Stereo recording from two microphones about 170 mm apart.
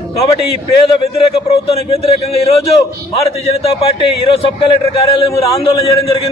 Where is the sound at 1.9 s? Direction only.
35° left (ahead or behind).